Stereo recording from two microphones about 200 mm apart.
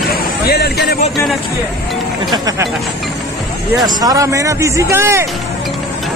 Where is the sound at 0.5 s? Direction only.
55° left (ahead or behind).